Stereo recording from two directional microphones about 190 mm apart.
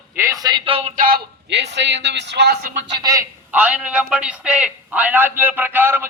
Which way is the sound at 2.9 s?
20° right (ahead or behind).